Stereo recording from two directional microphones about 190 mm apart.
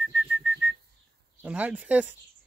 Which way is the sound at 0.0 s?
Centre (ahead or behind).